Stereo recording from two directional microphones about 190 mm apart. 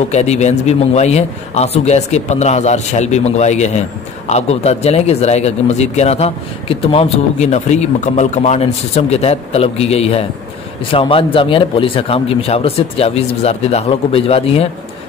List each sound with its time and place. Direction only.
0.1 s speech: 35° left (ahead or behind)